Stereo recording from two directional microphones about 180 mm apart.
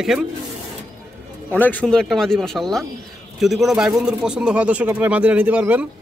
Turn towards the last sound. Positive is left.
turn(degrees=-5)  # may be behind; listen again after turning